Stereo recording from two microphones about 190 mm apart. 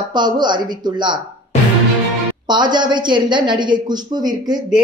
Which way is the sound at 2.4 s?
25° right (ahead or behind).